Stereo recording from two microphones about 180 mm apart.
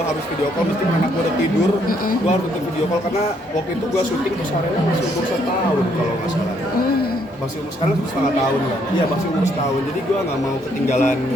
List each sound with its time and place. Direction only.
10.8 s speech: 40° left (ahead or behind)